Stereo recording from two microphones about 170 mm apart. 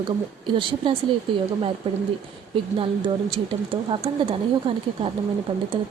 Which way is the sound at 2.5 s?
30° right (ahead or behind).